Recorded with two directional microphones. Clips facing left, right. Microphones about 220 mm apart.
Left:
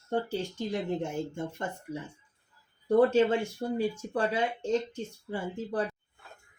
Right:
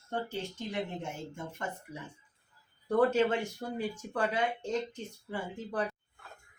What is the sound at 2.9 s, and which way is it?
Speech, 25° left (ahead or behind).